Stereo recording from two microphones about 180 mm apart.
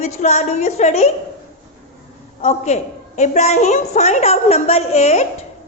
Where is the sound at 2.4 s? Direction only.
40° left (ahead or behind).